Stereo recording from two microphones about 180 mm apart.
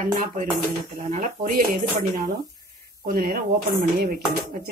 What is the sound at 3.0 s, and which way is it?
Speech, 55° right (ahead or behind).